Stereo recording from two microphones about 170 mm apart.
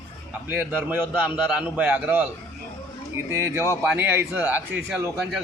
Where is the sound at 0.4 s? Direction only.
10° right (ahead or behind).